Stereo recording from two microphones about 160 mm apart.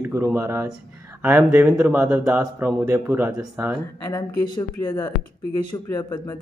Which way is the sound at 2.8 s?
15° right (ahead or behind).